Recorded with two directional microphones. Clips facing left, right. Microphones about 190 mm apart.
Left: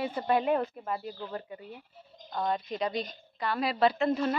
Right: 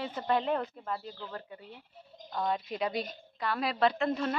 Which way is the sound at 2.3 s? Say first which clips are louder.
Left 1 dB; centre (ahead or behind).